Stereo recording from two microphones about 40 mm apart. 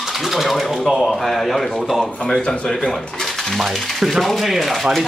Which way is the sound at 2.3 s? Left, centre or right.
Centre.